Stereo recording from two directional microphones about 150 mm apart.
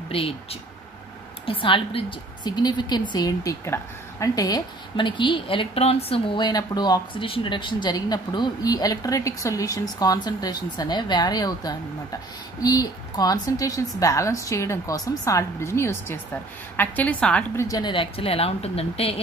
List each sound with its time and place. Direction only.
0.1 s a woman's voice: 40° left (ahead or behind); by 17.6 s 10° left (ahead or behind)
17.6 s a woman's voice: 30° left (ahead or behind)